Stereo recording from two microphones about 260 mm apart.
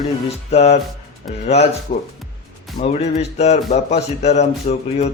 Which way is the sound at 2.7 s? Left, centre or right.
Left.